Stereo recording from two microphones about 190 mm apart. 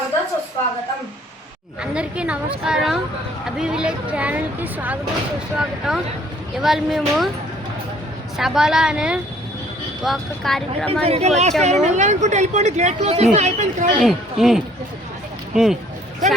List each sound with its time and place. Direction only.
1.8 s a woman's voice: 5° right (ahead or behind)
8.4 s a woman's voice: centre (ahead or behind)
11.0 s speech: 35° right (ahead or behind)
14.0 s a woman's voice: centre (ahead or behind)